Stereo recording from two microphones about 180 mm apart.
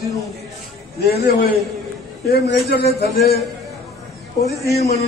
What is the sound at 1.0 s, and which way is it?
A man's voice, 60° left (ahead or behind).